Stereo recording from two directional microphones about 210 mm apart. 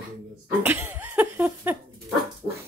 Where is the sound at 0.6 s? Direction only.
10° right (ahead or behind).